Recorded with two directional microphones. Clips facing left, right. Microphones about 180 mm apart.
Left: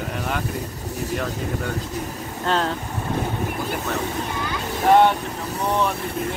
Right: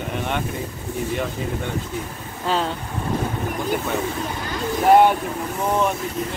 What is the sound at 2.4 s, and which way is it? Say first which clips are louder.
Speech: even; centre (ahead or behind).